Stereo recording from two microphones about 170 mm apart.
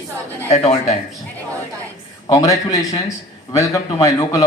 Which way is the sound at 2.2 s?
20° left (ahead or behind).